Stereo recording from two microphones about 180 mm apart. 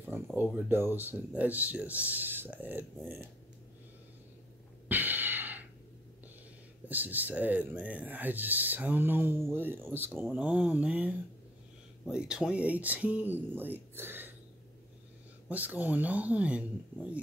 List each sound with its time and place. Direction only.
0.4 s speech: 10° right (ahead or behind)
4.8 s a sound: 10° right (ahead or behind)
6.9 s speech: 10° right (ahead or behind)
15.4 s speech: 10° right (ahead or behind)